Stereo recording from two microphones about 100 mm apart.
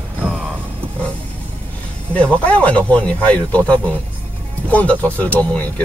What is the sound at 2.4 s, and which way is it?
Speech, 15° left (ahead or behind).